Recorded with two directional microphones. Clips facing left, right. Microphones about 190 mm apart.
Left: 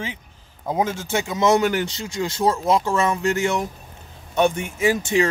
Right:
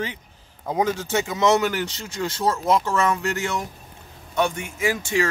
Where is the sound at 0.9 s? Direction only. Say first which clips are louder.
Right 1 dB; 15° left (ahead or behind).